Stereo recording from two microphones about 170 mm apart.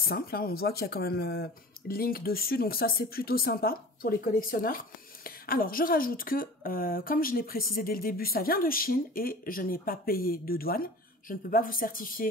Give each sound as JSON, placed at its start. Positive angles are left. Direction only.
{"t": 0.0, "sound": "speech", "side_deg": 60}